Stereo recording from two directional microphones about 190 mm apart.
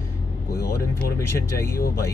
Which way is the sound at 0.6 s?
50° left (ahead or behind).